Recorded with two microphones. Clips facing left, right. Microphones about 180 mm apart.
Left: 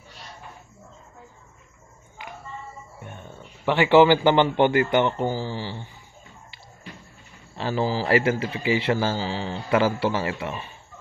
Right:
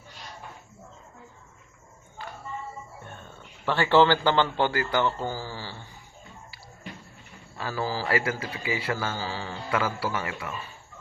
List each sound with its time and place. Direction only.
2.2 s a sound: 15° left (ahead or behind)
3.0 s speech: 15° left (ahead or behind)
7.5 s a man's voice: 25° left (ahead or behind)